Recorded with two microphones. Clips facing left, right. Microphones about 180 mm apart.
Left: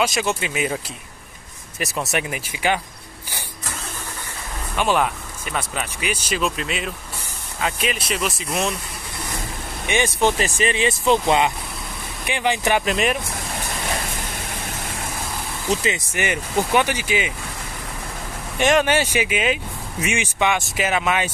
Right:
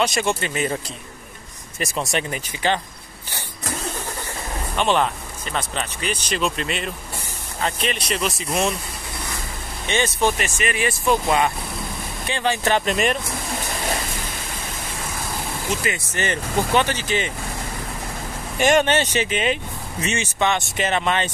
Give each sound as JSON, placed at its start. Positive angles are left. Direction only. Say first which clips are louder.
{"t": 0.0, "sound": "speech", "louder": "even", "side_deg": 5}
{"t": 1.8, "sound": "speech", "louder": "even", "side_deg": 5}
{"t": 4.7, "sound": "speech", "louder": "even", "side_deg": 5}
{"t": 9.8, "sound": "speech", "louder": "left 1 dB", "side_deg": 15}
{"t": 10.3, "sound": "speech", "louder": "left 3 dB", "side_deg": 30}
{"t": 12.8, "sound": "speech", "louder": "even", "side_deg": 0}
{"t": 15.7, "sound": "speech", "louder": "left 5 dB", "side_deg": 35}
{"t": 16.1, "sound": "speech", "louder": "even", "side_deg": 15}
{"t": 18.6, "sound": "speech", "louder": "even", "side_deg": 0}